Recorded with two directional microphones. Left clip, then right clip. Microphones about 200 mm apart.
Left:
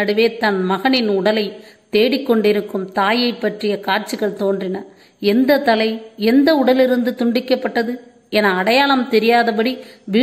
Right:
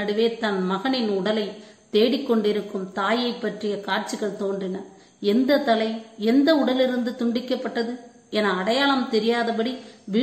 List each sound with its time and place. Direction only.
0.4 s a woman's voice: 25° left (ahead or behind)